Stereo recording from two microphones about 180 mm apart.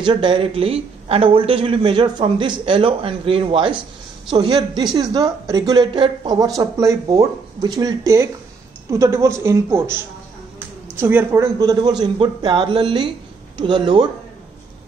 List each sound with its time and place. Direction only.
0.0 s a woman's voice: 25° right (ahead or behind)
11.0 s speech: 15° right (ahead or behind)